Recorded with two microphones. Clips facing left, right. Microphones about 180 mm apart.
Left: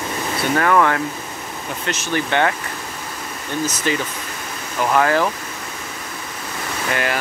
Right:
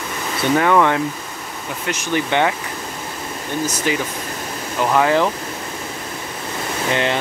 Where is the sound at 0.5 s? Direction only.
10° right (ahead or behind).